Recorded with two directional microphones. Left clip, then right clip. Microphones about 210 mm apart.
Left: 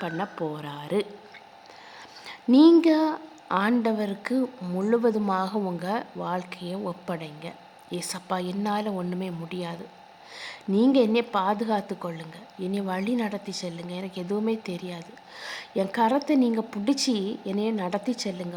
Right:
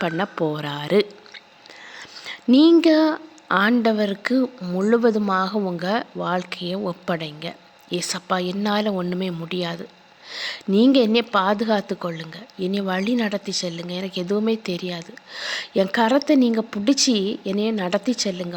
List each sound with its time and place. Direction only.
0.0 s a woman's voice: 20° right (ahead or behind)